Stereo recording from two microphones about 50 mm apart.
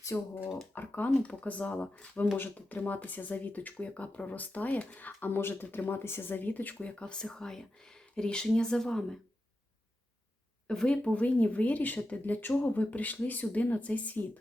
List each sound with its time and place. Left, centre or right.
0.1 s speech: left
0.7 s speech: left
1.2 s speech: left
6.8 s speech: centre
10.7 s speech: centre